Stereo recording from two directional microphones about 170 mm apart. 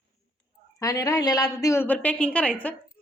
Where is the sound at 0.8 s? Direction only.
20° left (ahead or behind).